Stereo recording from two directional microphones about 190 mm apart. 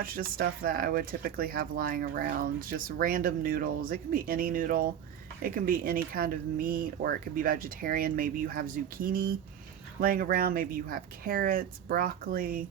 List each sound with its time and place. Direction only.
0.0 s speech: 50° right (ahead or behind)